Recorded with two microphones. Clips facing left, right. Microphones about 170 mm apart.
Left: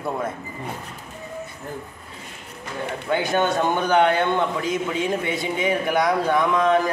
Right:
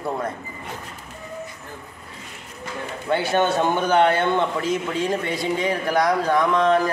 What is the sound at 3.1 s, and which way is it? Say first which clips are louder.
A man's voice: right 1 dB; 5° right (ahead or behind).